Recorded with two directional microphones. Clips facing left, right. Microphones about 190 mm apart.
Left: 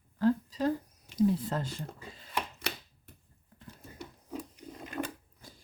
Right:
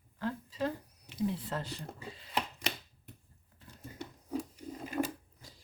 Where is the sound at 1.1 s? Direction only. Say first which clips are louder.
Left 7 dB; 40° left (ahead or behind).